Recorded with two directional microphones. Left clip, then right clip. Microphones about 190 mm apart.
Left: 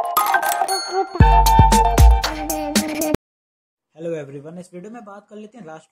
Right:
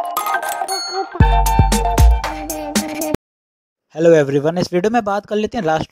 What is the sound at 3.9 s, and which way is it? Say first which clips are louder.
Speech: right 17 dB; 35° right (ahead or behind).